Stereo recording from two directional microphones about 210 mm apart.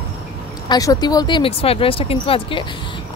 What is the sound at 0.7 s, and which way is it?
Speech, 20° left (ahead or behind).